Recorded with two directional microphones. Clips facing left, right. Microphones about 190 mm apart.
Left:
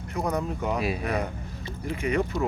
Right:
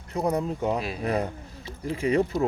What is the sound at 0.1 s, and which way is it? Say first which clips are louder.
Speech: right 2 dB; 30° right (ahead or behind).